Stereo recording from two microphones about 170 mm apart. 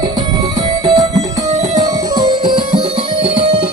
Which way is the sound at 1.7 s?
20° right (ahead or behind).